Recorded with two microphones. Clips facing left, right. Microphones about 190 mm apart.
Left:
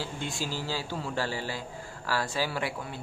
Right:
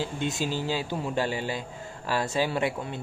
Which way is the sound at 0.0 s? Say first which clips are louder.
Right 5 dB; 20° right (ahead or behind).